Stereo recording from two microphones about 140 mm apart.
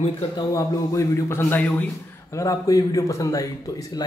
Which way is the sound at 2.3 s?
25° left (ahead or behind).